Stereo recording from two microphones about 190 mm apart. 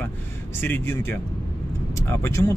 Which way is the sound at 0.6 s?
10° left (ahead or behind).